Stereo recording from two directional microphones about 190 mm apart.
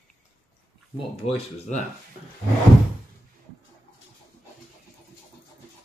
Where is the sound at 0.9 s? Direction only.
30° left (ahead or behind).